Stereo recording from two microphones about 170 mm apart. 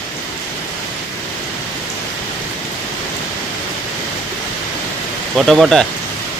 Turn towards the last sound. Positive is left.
turn(degrees=0)  # may be behind; listen again after turning